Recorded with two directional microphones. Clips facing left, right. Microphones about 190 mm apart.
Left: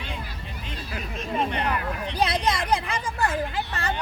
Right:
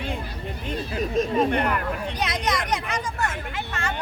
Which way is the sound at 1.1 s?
40° right (ahead or behind).